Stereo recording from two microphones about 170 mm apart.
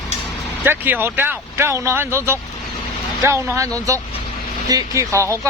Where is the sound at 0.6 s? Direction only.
10° right (ahead or behind).